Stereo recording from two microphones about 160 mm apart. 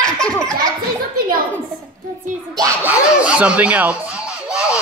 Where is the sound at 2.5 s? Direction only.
20° right (ahead or behind).